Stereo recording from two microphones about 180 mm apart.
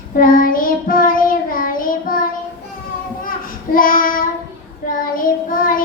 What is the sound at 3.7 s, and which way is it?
Child singing, 50° left (ahead or behind).